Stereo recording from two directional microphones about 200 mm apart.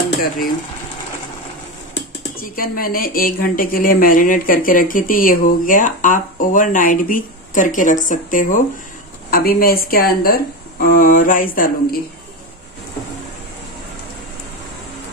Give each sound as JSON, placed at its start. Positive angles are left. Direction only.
{"t": 2.3, "sound": "a woman's voice", "side_deg": 45}